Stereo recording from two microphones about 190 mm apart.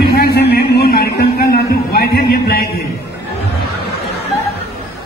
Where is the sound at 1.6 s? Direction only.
55° left (ahead or behind).